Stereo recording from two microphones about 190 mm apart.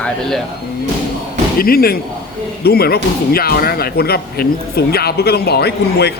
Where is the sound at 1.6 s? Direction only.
50° left (ahead or behind).